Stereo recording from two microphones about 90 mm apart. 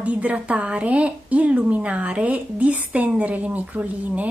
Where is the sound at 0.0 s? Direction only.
15° right (ahead or behind).